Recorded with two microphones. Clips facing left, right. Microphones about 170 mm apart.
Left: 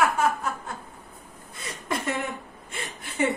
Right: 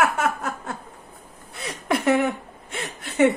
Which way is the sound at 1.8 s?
70° right (ahead or behind).